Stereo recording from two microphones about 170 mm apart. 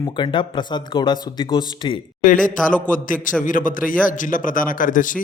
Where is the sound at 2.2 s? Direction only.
50° left (ahead or behind).